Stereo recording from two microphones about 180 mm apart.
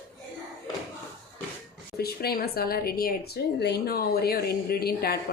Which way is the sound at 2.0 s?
60° left (ahead or behind).